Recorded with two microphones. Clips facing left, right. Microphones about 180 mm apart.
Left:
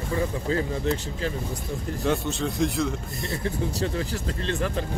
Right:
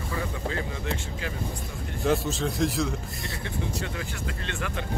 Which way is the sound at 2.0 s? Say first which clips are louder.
Right 1 dB; centre (ahead or behind).